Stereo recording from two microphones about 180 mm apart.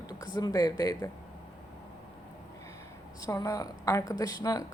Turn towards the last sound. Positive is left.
turn(degrees=20)  # may be behind; listen again after turning